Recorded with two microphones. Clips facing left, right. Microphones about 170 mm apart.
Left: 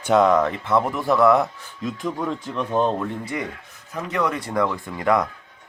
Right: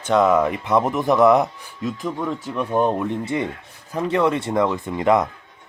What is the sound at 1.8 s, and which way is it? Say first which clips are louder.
Speech: right 1 dB; centre (ahead or behind).